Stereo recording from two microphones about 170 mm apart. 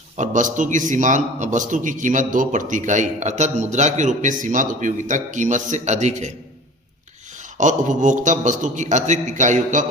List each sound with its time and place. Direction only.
0.2 s a man's voice: 50° right (ahead or behind)
7.3 s a man's voice: 45° right (ahead or behind)